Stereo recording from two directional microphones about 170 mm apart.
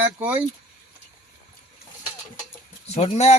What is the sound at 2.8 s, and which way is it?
Speech, 40° left (ahead or behind).